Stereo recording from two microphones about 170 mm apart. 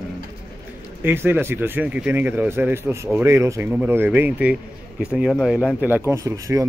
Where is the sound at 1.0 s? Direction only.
10° right (ahead or behind).